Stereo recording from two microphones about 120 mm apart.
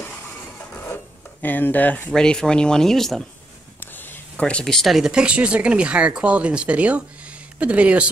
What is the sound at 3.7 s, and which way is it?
Speech, 15° left (ahead or behind).